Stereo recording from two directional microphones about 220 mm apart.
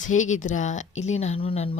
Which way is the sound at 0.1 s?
35° left (ahead or behind).